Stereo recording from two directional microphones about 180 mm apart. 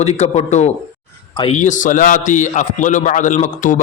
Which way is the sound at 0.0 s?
35° left (ahead or behind).